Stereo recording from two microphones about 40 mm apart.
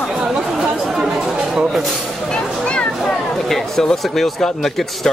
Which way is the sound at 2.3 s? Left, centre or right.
Left.